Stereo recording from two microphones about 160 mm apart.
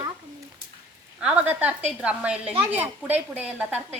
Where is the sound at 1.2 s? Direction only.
10° right (ahead or behind).